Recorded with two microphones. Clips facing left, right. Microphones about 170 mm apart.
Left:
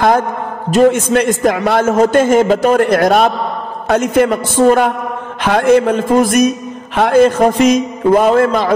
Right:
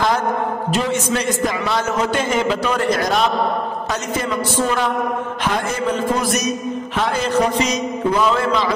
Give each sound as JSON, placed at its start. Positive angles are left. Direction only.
{"t": 0.7, "sound": "a man's voice", "side_deg": 50}
{"t": 5.5, "sound": "a man's voice", "side_deg": 65}